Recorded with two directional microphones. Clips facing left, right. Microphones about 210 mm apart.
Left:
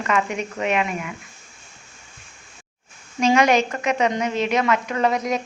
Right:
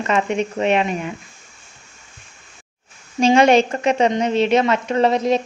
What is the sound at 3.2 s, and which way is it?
A woman's voice, 30° right (ahead or behind).